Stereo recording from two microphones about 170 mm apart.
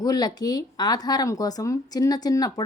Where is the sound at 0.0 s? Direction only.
20° left (ahead or behind).